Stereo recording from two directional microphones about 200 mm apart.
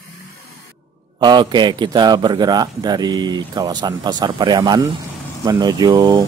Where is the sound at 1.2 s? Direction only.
20° right (ahead or behind).